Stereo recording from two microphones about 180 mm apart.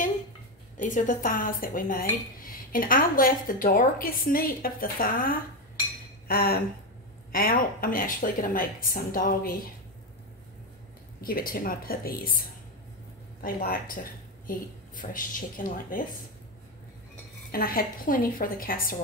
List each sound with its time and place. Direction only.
0.7 s speech: 45° left (ahead or behind)
6.2 s a sound: 55° left (ahead or behind)
7.3 s speech: 55° left (ahead or behind)
11.1 s speech: 55° left (ahead or behind)
17.5 s speech: 55° left (ahead or behind)